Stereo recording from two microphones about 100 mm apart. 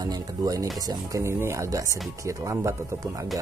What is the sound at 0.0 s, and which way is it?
Speech, 35° right (ahead or behind).